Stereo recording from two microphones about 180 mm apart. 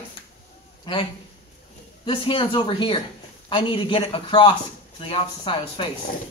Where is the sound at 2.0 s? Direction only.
30° left (ahead or behind).